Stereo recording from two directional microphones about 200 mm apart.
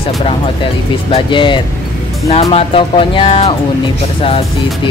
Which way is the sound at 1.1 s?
25° left (ahead or behind).